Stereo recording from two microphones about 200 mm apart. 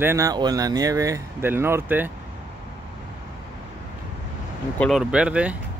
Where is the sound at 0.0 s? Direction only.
15° right (ahead or behind).